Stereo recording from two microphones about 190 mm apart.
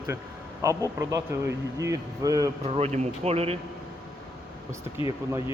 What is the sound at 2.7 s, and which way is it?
Speech, 35° right (ahead or behind).